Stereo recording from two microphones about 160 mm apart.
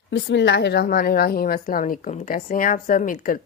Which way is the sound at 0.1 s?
90° left.